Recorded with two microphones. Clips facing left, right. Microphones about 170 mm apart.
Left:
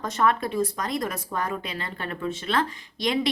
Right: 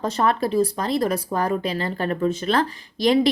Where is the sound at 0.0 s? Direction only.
30° right (ahead or behind).